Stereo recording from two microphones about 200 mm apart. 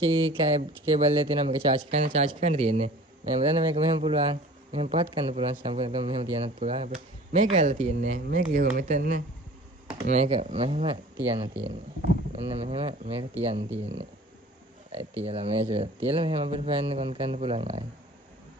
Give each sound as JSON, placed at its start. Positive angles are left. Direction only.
{"t": 0.0, "sound": "speech", "side_deg": -25}
{"t": 12.3, "sound": "speech", "side_deg": -30}
{"t": 15.2, "sound": "speech", "side_deg": -30}